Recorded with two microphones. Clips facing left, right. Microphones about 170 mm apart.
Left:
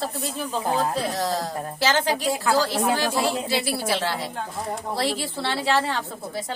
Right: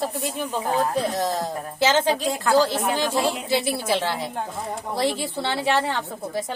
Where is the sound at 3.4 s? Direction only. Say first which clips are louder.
Right 2 dB; 20° right (ahead or behind).